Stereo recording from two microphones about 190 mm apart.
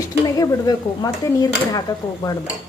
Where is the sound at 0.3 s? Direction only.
20° left (ahead or behind).